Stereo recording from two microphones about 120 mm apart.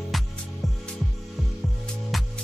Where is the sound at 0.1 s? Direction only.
Centre (ahead or behind).